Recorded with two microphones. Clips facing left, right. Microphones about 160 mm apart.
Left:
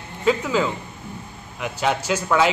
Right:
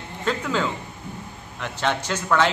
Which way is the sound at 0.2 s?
5° left (ahead or behind).